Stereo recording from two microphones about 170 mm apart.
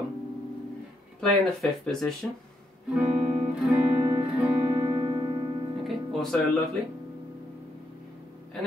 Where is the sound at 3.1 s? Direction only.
40° right (ahead or behind).